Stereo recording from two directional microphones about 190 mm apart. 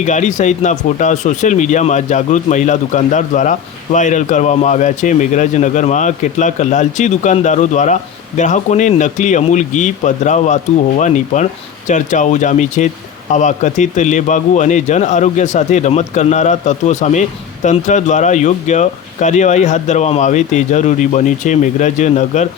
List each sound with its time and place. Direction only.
0.0 s speech: 40° left (ahead or behind)